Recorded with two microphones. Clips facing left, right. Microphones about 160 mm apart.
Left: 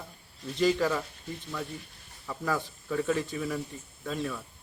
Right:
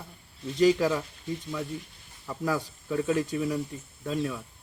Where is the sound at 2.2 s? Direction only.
10° right (ahead or behind).